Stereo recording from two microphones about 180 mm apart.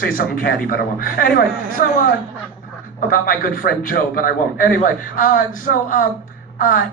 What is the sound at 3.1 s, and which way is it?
A man's voice, 50° left (ahead or behind).